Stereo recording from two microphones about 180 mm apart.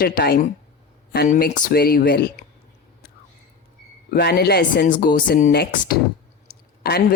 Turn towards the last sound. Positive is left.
turn(degrees=60)  # may be behind; listen again after turning